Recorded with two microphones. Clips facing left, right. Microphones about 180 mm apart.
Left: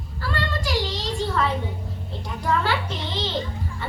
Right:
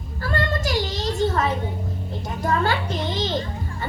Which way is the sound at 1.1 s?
45° right (ahead or behind).